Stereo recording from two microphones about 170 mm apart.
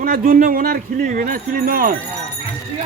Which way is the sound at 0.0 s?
55° right (ahead or behind).